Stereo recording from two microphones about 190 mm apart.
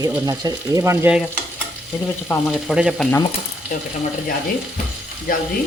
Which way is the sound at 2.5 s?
5° right (ahead or behind).